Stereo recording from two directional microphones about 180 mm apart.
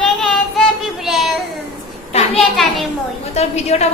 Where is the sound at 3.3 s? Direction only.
35° left (ahead or behind).